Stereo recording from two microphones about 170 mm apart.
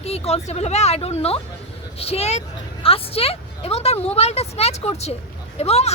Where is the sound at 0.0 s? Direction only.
35° left (ahead or behind).